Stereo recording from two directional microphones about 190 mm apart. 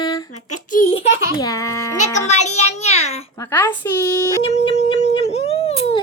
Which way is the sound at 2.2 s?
35° left (ahead or behind).